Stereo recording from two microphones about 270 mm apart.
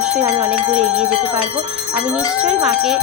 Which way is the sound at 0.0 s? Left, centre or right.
Centre.